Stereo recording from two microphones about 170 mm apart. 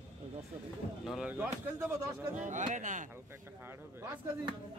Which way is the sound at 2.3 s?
45° right (ahead or behind).